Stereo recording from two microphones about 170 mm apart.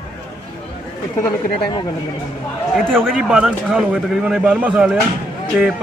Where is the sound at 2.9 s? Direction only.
Centre (ahead or behind).